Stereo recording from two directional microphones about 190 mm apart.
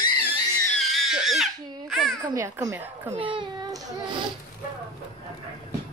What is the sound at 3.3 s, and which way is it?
Child singing, 25° right (ahead or behind).